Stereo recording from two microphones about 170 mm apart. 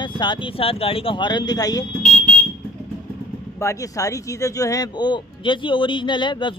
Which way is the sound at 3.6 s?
20° left (ahead or behind).